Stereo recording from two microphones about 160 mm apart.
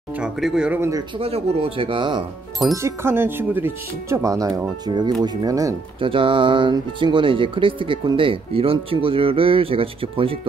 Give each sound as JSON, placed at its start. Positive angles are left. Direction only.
{"t": 0.1, "sound": "speech", "side_deg": -5}
{"t": 1.1, "sound": "speech", "side_deg": -35}
{"t": 2.7, "sound": "speech", "side_deg": -15}
{"t": 5.9, "sound": "speech", "side_deg": -35}